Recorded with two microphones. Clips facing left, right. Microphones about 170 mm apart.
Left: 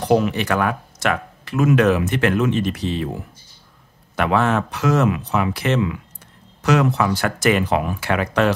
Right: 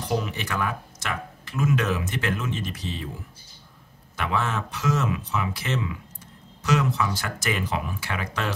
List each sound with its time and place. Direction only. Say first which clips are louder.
0.0 s speech: left 10 dB; 65° left (ahead or behind)